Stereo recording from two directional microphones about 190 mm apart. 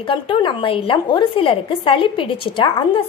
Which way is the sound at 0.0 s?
25° left (ahead or behind).